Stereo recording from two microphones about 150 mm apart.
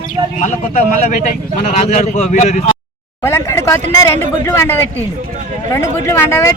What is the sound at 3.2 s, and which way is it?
Speech, 15° left (ahead or behind).